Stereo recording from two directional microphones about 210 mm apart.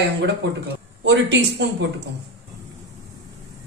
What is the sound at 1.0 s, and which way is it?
Speech, 55° right (ahead or behind).